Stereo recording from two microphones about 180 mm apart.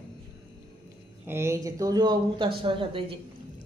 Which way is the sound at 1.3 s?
15° right (ahead or behind).